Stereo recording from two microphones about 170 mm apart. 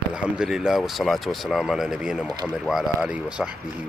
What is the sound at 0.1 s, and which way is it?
Speech, 5° right (ahead or behind).